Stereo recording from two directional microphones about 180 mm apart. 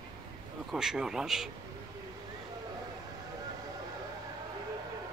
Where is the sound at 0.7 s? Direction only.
5° right (ahead or behind).